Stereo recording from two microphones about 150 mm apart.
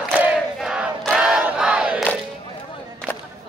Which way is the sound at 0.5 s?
5° right (ahead or behind).